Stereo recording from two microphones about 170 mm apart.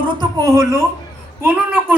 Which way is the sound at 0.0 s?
25° right (ahead or behind).